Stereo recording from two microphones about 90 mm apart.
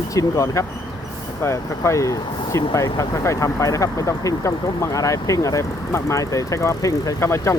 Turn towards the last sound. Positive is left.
turn(degrees=30)  # may be behind; listen again after turning